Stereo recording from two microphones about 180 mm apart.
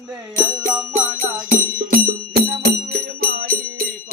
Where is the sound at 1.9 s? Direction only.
65° right (ahead or behind).